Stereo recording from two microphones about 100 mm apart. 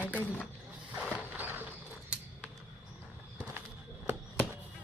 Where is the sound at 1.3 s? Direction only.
20° right (ahead or behind).